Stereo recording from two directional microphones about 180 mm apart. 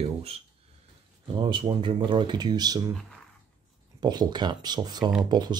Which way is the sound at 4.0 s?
20° right (ahead or behind).